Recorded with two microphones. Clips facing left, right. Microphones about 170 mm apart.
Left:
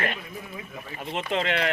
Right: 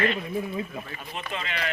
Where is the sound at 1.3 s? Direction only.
70° left (ahead or behind).